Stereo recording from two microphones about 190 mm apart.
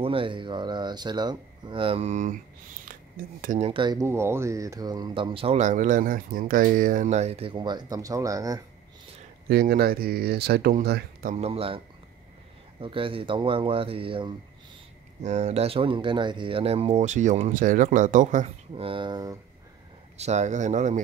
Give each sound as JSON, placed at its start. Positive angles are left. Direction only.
{"t": 0.0, "sound": "speech", "side_deg": -25}
{"t": 9.5, "sound": "speech", "side_deg": -55}
{"t": 11.3, "sound": "speech", "side_deg": -30}
{"t": 12.8, "sound": "speech", "side_deg": -30}
{"t": 20.2, "sound": "speech", "side_deg": -35}